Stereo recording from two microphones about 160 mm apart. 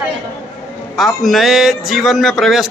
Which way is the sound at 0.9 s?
Centre (ahead or behind).